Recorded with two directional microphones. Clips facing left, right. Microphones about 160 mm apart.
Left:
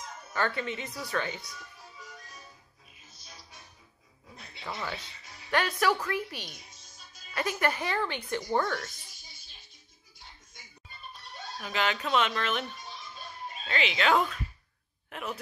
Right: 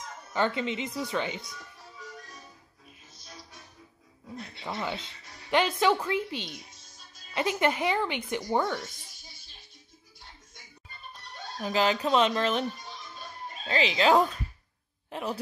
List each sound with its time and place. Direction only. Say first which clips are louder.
0.3 s speech: right 3 dB; 20° right (ahead or behind)
4.6 s a woman's voice: right 3 dB; 20° right (ahead or behind)
11.6 s speech: right 5 dB; 35° right (ahead or behind)
13.7 s speech: right 4 dB; 30° right (ahead or behind)